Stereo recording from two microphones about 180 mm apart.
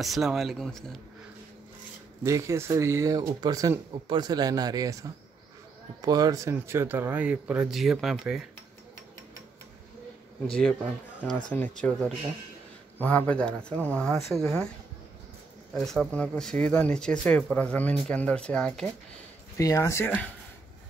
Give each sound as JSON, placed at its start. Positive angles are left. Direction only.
{"t": 0.0, "sound": "speech", "side_deg": 0}
{"t": 2.2, "sound": "speech", "side_deg": -15}
{"t": 10.4, "sound": "speech", "side_deg": 5}
{"t": 13.0, "sound": "speech", "side_deg": 10}
{"t": 15.7, "sound": "speech", "side_deg": 0}
{"t": 19.5, "sound": "speech", "side_deg": 20}